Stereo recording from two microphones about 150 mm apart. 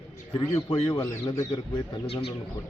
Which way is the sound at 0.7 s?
35° left (ahead or behind).